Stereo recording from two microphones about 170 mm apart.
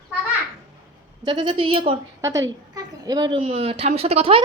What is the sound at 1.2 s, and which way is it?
Speech, 30° right (ahead or behind).